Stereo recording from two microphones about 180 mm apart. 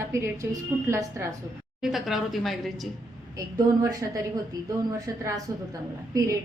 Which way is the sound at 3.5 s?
20° right (ahead or behind).